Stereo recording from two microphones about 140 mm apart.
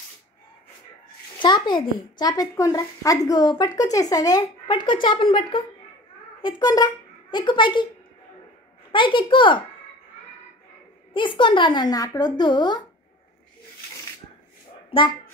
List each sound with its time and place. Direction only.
1.4 s a child's voice: 35° left (ahead or behind)
6.6 s speech: 30° left (ahead or behind)
8.9 s speech: 35° left (ahead or behind)
11.1 s speech: 35° left (ahead or behind)
14.9 s speech: 35° left (ahead or behind)